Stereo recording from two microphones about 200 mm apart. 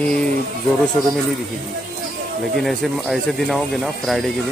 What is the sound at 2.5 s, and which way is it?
Speech, centre (ahead or behind).